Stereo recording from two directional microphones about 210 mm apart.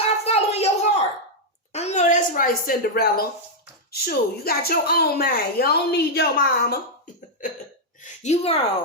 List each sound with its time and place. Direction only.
0.0 s a sound: 30° left (ahead or behind); by 3.2 s 45° left (ahead or behind)
3.9 s a woman's voice: 50° left (ahead or behind)
8.2 s speech: 30° left (ahead or behind)